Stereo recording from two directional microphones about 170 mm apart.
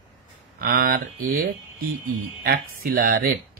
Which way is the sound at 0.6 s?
60° right (ahead or behind).